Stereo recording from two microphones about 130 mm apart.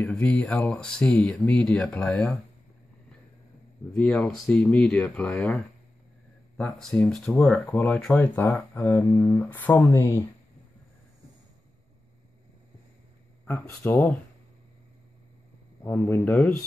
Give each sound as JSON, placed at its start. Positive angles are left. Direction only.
{"t": 0.1, "sound": "speech", "side_deg": 5}
{"t": 3.9, "sound": "speech", "side_deg": 10}
{"t": 6.6, "sound": "speech", "side_deg": 5}
{"t": 8.5, "sound": "speech", "side_deg": 25}
{"t": 13.5, "sound": "speech", "side_deg": 15}
{"t": 15.8, "sound": "speech", "side_deg": 15}